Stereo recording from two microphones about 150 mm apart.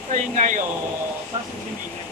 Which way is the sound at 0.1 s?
55° right (ahead or behind).